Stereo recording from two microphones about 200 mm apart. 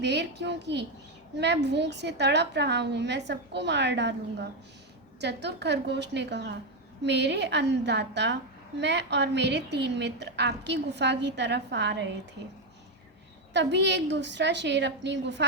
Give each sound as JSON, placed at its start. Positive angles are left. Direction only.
{"t": 0.0, "sound": "a woman's voice", "side_deg": -60}
{"t": 13.5, "sound": "a woman's voice", "side_deg": -60}